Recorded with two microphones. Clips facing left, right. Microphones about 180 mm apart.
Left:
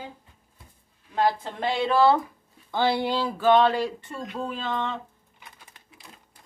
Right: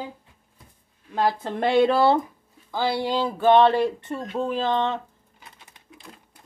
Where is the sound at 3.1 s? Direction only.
20° right (ahead or behind).